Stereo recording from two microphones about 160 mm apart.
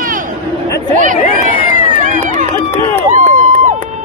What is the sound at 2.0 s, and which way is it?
Run, 50° right (ahead or behind).